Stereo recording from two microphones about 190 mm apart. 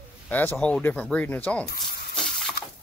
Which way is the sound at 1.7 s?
60° left (ahead or behind).